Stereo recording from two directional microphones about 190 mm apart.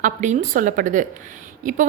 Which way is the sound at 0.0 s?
40° right (ahead or behind).